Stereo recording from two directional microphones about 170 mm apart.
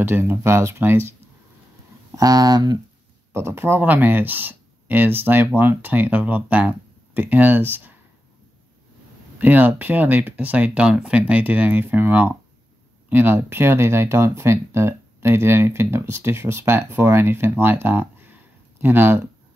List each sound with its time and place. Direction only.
0.0 s speech: 15° right (ahead or behind)
2.1 s speech: 20° right (ahead or behind)
9.4 s speech: 10° right (ahead or behind)